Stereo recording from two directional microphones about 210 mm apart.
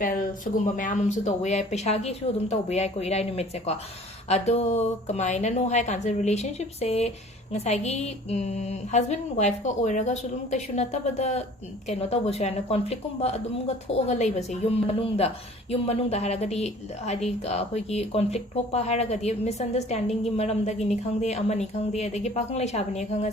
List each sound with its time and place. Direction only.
0.0 s speech: 40° left (ahead or behind)